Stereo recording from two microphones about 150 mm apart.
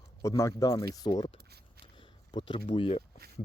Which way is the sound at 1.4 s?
90° right.